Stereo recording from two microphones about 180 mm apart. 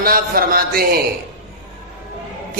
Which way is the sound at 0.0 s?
55° right (ahead or behind).